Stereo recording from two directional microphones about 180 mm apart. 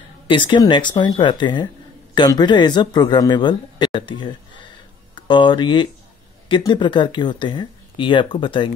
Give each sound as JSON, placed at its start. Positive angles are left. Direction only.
{"t": 0.3, "sound": "speech", "side_deg": 25}